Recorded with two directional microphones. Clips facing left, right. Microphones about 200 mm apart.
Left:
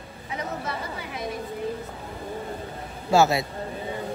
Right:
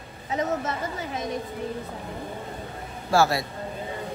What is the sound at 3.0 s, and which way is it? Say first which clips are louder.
Speech: left 2 dB; 20° left (ahead or behind).